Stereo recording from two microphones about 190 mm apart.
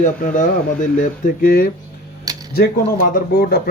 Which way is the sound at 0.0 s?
45° left (ahead or behind).